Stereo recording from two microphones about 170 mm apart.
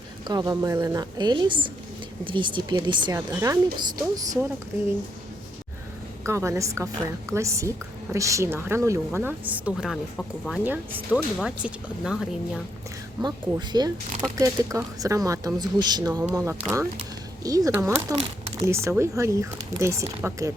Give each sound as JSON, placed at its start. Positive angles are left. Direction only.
{"t": 0.3, "sound": "speech", "side_deg": -25}
{"t": 6.2, "sound": "speech", "side_deg": -15}
{"t": 10.6, "sound": "speech", "side_deg": -10}
{"t": 13.6, "sound": "speech", "side_deg": -25}